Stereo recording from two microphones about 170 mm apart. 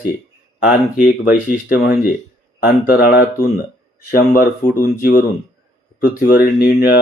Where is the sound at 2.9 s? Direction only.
60° left (ahead or behind).